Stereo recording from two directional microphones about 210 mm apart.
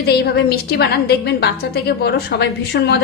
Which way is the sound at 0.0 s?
50° left (ahead or behind).